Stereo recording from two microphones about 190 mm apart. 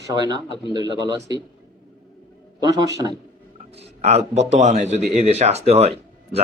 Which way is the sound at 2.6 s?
20° right (ahead or behind).